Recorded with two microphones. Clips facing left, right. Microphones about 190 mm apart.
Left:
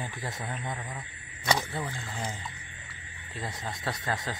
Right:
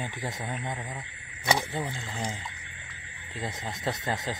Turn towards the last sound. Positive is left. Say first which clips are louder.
# right 2 dB
turn(degrees=-20)  # may be behind; listen again after turning